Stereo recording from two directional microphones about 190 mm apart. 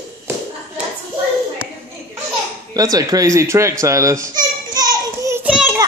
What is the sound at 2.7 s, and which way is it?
A man's voice, 20° right (ahead or behind).